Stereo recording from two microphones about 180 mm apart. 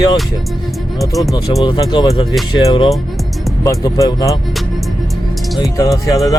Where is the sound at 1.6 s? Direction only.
25° left (ahead or behind).